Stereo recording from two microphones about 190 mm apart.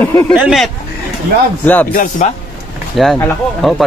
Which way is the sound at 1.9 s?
45° left (ahead or behind).